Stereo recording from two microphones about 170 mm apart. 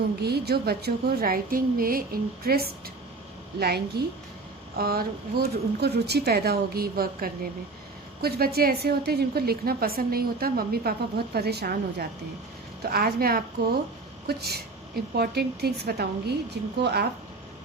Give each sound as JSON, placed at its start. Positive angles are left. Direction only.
{"t": 0.2, "sound": "a woman's voice", "side_deg": -70}